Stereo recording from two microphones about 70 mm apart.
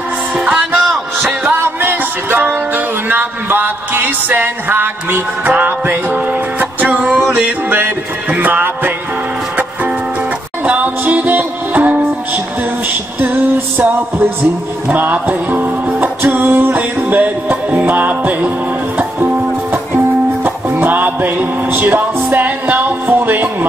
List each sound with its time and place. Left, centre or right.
0.4 s music: centre
1.6 s music: right
10.6 s music: centre
13.2 s music: right